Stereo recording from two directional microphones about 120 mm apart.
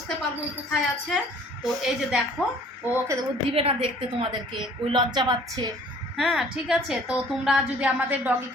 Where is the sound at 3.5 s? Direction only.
50° right (ahead or behind); by 5.7 s 35° right (ahead or behind).